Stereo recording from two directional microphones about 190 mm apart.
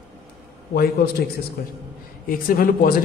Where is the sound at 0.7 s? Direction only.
55° left (ahead or behind).